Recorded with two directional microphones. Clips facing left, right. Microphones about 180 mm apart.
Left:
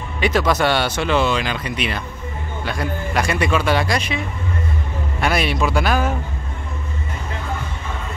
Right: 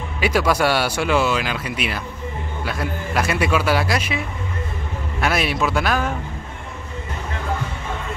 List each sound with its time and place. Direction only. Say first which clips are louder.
0.2 s speech: left 1 dB; 10° right (ahead or behind)
5.2 s speech: left 1 dB; centre (ahead or behind)